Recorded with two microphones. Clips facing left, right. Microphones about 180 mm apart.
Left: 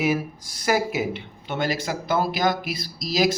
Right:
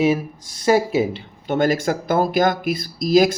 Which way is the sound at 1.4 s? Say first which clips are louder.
Right 8 dB; 45° right (ahead or behind).